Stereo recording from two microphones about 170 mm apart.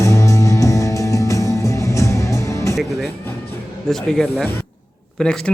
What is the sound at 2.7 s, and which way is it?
Music, centre (ahead or behind).